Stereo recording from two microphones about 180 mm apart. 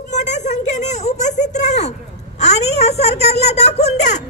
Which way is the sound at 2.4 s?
40° left (ahead or behind).